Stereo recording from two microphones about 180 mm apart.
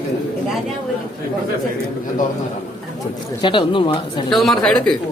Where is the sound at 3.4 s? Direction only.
25° left (ahead or behind).